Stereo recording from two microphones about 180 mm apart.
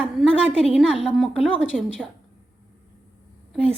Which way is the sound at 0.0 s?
5° right (ahead or behind).